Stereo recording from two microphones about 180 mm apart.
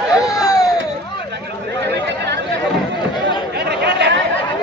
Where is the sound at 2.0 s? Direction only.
70° right (ahead or behind).